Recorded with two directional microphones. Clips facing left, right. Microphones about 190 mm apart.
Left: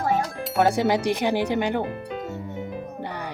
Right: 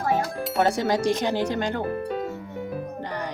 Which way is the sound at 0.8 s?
15° left (ahead or behind).